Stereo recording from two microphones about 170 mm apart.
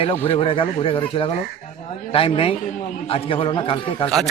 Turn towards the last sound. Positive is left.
turn(degrees=30)  # may be behind; listen again after turning